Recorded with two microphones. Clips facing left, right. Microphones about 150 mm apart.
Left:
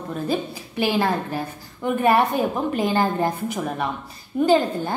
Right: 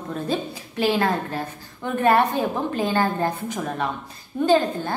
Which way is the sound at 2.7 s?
15° left (ahead or behind).